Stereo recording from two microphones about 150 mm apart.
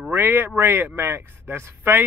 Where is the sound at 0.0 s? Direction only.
15° right (ahead or behind).